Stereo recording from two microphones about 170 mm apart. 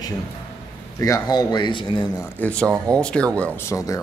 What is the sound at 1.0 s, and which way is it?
Speech, 20° left (ahead or behind).